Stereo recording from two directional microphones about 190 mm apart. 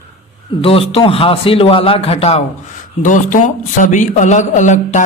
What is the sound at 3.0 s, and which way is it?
A man's voice, 40° left (ahead or behind).